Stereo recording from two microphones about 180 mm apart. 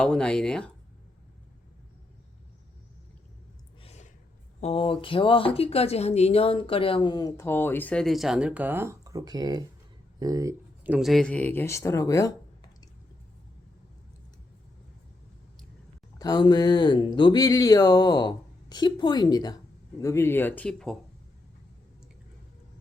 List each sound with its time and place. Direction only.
0.0 s speech: 5° left (ahead or behind)
3.8 s a sound: 40° left (ahead or behind)
4.6 s speech: 30° left (ahead or behind); by 10.5 s 20° right (ahead or behind)
10.8 s speech: 5° right (ahead or behind); by 12.3 s 20° left (ahead or behind)
16.1 s speech: 20° left (ahead or behind); by 20.9 s 5° left (ahead or behind)